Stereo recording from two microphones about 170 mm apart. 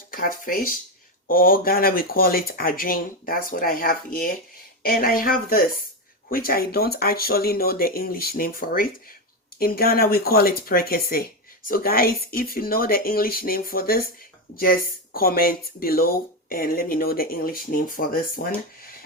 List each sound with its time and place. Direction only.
0.1 s speech: 55° left (ahead or behind)